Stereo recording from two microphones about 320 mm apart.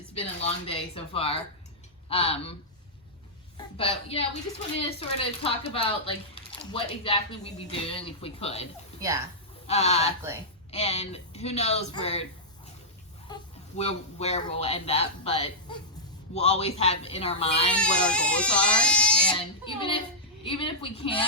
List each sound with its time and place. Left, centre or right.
0.1 s speech: centre
3.6 s speech: centre
9.0 s a woman's voice: centre
9.6 s speech: centre
17.7 s speech: centre
19.3 s a child's voice: centre